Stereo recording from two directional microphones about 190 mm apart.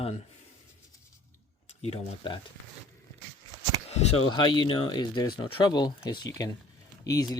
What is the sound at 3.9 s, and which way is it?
Speech, 35° left (ahead or behind).